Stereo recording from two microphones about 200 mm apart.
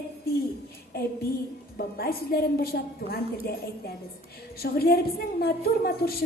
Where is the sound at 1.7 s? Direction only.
50° left (ahead or behind).